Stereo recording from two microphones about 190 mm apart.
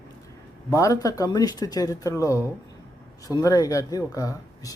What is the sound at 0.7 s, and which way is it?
Speech, 20° left (ahead or behind).